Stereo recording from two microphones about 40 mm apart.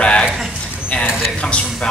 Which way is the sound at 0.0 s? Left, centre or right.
Left.